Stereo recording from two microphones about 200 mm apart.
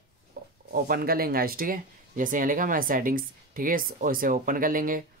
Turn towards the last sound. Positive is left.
turn(degrees=-45)  # may be behind; listen again after turning